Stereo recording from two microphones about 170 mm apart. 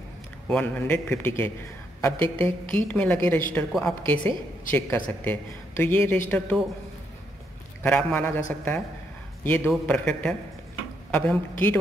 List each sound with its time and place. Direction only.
0.5 s a man's voice: 5° left (ahead or behind)
7.8 s a man's voice: 10° left (ahead or behind)